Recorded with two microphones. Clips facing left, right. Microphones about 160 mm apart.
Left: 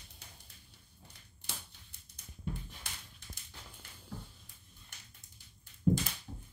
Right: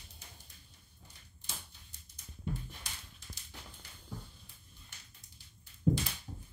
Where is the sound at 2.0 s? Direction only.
65° left (ahead or behind).